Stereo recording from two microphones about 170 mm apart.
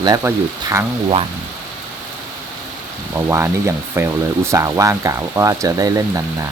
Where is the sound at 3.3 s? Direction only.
15° right (ahead or behind).